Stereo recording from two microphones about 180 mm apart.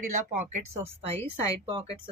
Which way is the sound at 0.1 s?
40° right (ahead or behind).